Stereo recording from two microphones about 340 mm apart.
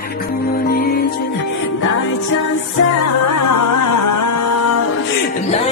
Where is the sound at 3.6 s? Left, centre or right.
Left.